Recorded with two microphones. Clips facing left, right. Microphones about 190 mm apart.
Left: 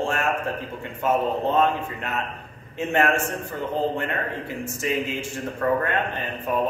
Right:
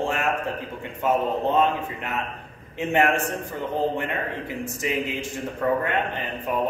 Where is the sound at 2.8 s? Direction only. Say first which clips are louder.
Even; 15° right (ahead or behind).